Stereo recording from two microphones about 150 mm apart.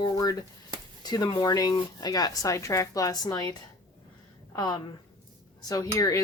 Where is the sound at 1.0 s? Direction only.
25° left (ahead or behind).